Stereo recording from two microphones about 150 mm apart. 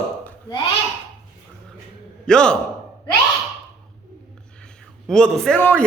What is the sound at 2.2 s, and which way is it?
Speech, 5° left (ahead or behind).